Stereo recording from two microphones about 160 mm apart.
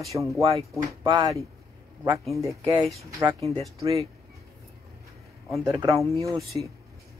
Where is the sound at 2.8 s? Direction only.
Centre (ahead or behind).